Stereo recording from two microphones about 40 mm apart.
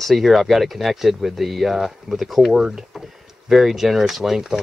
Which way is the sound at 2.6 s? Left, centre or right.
Centre.